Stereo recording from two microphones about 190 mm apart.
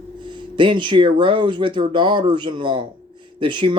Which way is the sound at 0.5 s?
25° right (ahead or behind).